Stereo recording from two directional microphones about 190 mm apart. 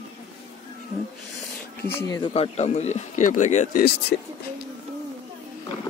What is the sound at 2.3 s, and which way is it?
Speech, 35° left (ahead or behind).